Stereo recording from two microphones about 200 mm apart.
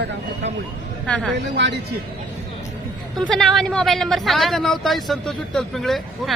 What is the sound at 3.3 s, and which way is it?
Speech, 5° left (ahead or behind).